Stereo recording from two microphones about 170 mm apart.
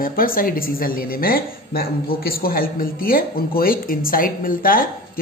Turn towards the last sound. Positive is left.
turn(degrees=55)  # may be behind; listen again after turning